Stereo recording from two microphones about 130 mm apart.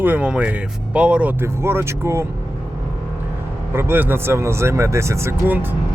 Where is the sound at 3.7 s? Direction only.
15° right (ahead or behind).